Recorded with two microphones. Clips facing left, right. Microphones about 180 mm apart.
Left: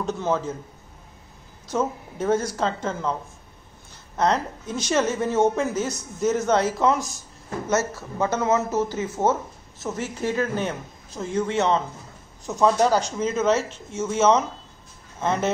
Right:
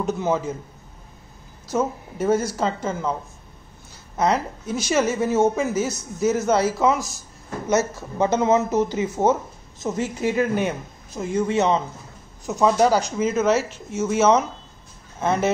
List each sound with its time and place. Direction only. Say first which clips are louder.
0.0 s speech: right 2 dB; 10° right (ahead or behind)
1.7 s speech: right 2 dB; 5° right (ahead or behind)
4.2 s speech: right 1 dB; 5° right (ahead or behind)
7.7 s speech: right 3 dB; 15° right (ahead or behind)